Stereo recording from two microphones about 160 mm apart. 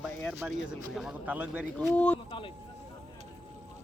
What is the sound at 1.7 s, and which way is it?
Speech, 10° left (ahead or behind).